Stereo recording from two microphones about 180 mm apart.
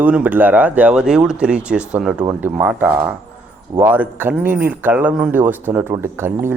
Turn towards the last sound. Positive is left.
turn(degrees=-15)  # may be behind; listen again after turning